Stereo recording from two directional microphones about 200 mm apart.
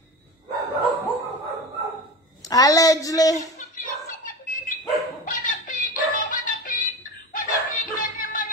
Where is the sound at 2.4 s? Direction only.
15° left (ahead or behind).